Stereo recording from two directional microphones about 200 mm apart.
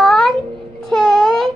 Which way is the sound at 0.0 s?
Centre (ahead or behind).